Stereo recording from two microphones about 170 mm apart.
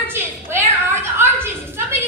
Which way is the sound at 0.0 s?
15° right (ahead or behind).